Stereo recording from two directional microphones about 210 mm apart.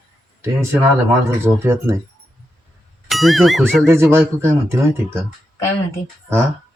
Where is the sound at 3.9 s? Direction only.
10° right (ahead or behind).